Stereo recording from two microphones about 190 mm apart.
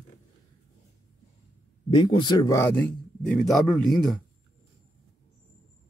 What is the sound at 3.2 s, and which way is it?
Speech, centre (ahead or behind).